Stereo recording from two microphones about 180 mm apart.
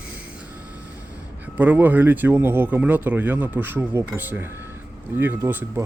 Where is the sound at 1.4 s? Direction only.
10° right (ahead or behind).